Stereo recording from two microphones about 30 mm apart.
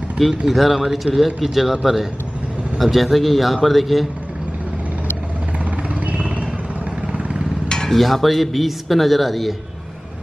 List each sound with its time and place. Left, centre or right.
0.5 s speech: centre
2.8 s speech: centre
7.6 s stir: left
7.9 s speech: centre